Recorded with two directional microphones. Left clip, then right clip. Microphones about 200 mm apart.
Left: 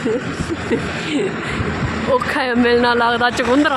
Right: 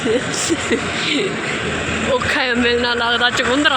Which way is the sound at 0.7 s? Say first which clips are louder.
Right 2 dB; 10° left (ahead or behind).